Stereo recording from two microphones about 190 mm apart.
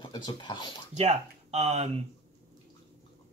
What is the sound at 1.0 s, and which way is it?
Speech, 35° right (ahead or behind).